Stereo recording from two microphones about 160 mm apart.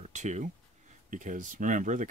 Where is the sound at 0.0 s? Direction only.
45° right (ahead or behind).